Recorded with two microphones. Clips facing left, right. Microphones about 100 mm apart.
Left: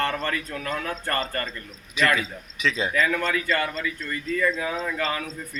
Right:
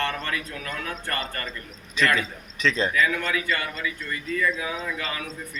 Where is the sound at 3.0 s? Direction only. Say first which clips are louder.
Left 1 dB; 35° left (ahead or behind).